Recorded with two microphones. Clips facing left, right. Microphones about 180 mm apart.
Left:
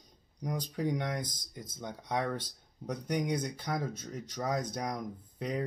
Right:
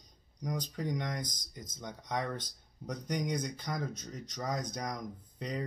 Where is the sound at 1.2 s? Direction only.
55° left (ahead or behind).